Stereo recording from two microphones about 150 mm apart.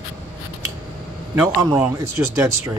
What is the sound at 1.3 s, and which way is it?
Speech, 20° right (ahead or behind).